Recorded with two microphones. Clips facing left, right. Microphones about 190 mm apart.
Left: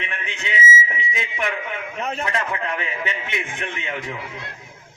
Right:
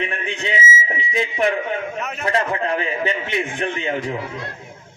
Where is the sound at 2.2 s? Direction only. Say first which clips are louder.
Right 9 dB; 35° right (ahead or behind).